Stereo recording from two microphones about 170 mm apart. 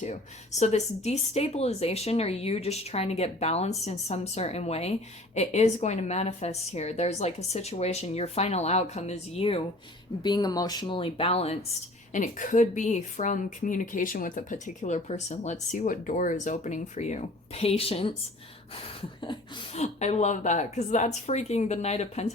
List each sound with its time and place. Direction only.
0.6 s speech: 40° left (ahead or behind)
12.1 s a woman's voice: 50° left (ahead or behind)
19.2 s speech: 25° left (ahead or behind)
19.8 s speech: 40° left (ahead or behind)